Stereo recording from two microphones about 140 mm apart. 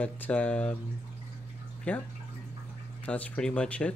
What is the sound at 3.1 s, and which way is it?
Speech, 5° left (ahead or behind).